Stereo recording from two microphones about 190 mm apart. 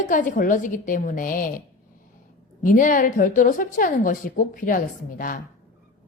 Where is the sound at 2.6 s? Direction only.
45° left (ahead or behind).